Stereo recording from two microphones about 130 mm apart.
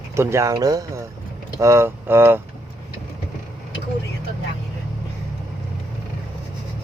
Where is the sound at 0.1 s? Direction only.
20° right (ahead or behind).